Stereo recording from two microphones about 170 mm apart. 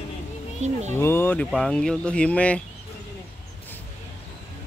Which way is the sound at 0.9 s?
15° left (ahead or behind).